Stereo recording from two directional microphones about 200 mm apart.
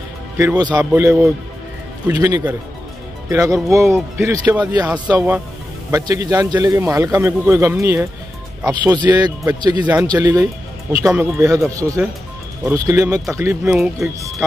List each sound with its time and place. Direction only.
0.4 s a man's voice: 15° right (ahead or behind)